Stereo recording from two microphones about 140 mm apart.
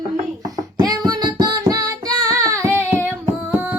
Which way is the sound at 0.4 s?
25° right (ahead or behind).